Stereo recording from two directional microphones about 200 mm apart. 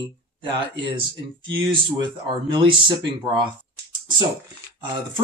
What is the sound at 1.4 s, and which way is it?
Speech, 25° right (ahead or behind).